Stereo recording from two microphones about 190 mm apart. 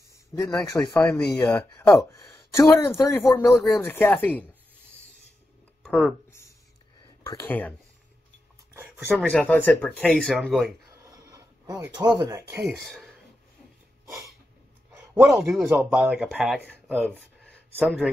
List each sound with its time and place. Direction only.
0.3 s speech: 15° left (ahead or behind)
5.8 s a sound: centre (ahead or behind)
7.2 s speech: 10° left (ahead or behind)
9.1 s speech: 5° left (ahead or behind)
11.1 s a sound: 20° right (ahead or behind)
12.2 s speech: 20° right (ahead or behind)
12.6 s speech: centre (ahead or behind)
15.1 s speech: 5° right (ahead or behind)